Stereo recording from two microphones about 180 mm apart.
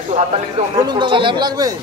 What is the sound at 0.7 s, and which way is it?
Speech, 25° right (ahead or behind).